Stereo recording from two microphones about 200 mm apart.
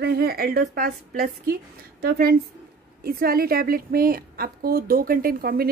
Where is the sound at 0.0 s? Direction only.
50° right (ahead or behind).